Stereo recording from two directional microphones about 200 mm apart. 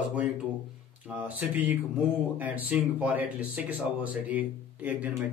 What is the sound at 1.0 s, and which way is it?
Speech, 10° right (ahead or behind).